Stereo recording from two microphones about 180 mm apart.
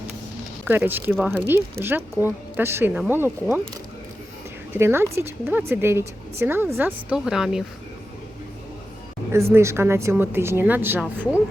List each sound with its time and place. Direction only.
0.6 s a woman's voice: 10° right (ahead or behind)
4.7 s a woman's voice: 15° right (ahead or behind)
9.3 s a woman's voice: 15° right (ahead or behind)